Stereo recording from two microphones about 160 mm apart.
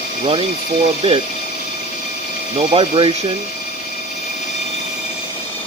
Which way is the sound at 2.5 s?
35° right (ahead or behind).